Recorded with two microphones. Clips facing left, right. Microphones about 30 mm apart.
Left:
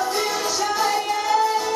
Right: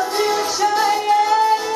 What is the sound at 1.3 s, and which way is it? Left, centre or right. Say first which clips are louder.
Music: right 4 dB; right.